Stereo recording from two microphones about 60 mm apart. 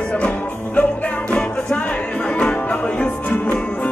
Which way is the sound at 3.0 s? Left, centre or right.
Left.